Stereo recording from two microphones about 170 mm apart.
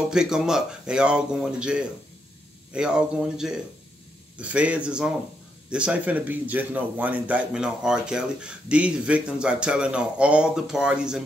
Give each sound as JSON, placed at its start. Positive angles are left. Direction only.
{"t": 0.1, "sound": "a man's voice", "side_deg": -5}